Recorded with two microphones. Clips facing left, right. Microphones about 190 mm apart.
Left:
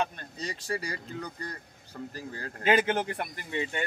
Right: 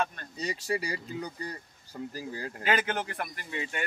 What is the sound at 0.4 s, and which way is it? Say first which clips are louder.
Speech: right 3 dB; 10° right (ahead or behind).